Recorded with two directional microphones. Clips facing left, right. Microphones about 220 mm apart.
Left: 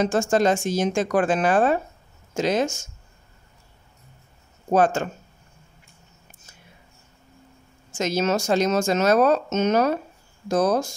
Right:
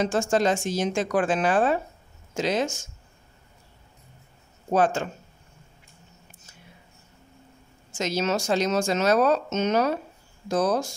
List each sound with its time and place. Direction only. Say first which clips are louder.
0.0 s speech: left 3 dB; 45° left (ahead or behind)
4.6 s speech: left 3 dB; 45° left (ahead or behind)
8.0 s speech: left 3 dB; 50° left (ahead or behind)